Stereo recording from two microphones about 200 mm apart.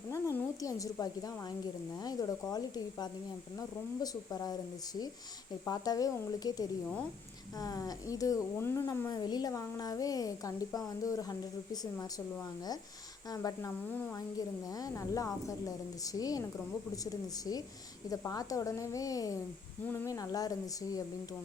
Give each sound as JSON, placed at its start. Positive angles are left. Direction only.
{"t": 0.1, "sound": "speech", "side_deg": 15}
{"t": 5.6, "sound": "speech", "side_deg": 20}
{"t": 13.3, "sound": "speech", "side_deg": 15}